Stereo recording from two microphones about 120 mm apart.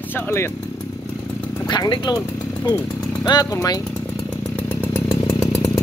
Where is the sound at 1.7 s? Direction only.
35° left (ahead or behind).